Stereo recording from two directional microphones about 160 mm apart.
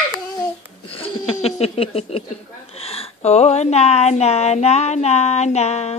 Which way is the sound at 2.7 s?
40° left (ahead or behind).